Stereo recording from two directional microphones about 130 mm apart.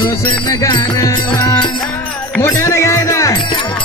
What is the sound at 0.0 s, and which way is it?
Music, 30° left (ahead or behind).